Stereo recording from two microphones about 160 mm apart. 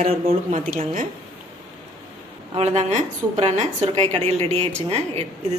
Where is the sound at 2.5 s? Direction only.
45° right (ahead or behind).